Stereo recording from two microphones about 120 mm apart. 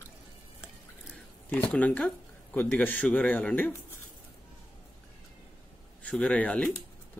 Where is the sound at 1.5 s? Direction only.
10° left (ahead or behind).